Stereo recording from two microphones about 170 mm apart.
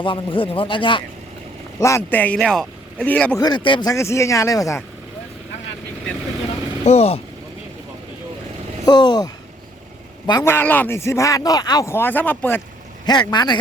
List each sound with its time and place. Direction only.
0.0 s speech: 30° left (ahead or behind)
1.8 s speech: 15° left (ahead or behind)
3.4 s speech: 25° left (ahead or behind)
6.8 s speech: 35° left (ahead or behind)
8.8 s speech: 25° left (ahead or behind)
13.1 s speech: 25° left (ahead or behind)